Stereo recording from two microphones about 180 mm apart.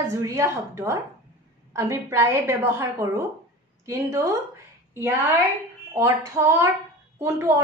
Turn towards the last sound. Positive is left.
turn(degrees=-15)  # may be behind; listen again after turning